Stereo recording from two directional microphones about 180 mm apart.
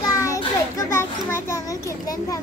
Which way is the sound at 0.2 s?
20° left (ahead or behind).